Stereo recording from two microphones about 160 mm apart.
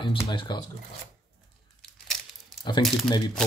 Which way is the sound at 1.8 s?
Centre (ahead or behind).